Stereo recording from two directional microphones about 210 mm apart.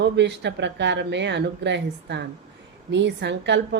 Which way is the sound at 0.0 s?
55° right (ahead or behind).